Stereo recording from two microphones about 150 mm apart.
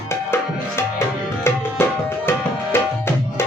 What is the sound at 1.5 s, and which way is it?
Tabla, 15° left (ahead or behind).